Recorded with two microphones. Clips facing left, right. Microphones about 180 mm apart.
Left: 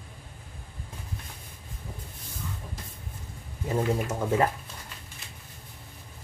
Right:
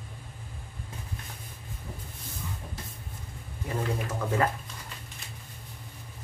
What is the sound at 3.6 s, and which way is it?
Speech, 25° left (ahead or behind).